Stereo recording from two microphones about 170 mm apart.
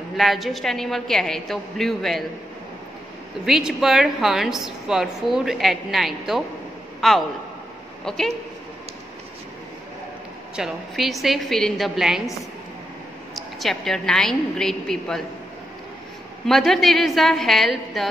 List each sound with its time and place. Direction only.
0.2 s a woman's voice: centre (ahead or behind)
3.4 s a woman's voice: centre (ahead or behind)
10.5 s a woman's voice: centre (ahead or behind)
16.4 s a woman's voice: centre (ahead or behind)